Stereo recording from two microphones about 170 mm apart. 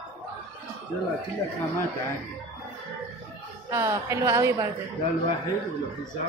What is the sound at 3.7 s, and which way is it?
A woman's voice, 15° right (ahead or behind).